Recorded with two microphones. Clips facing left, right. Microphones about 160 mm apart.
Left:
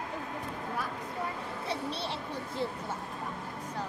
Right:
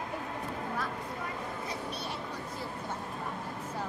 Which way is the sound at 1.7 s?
30° left (ahead or behind).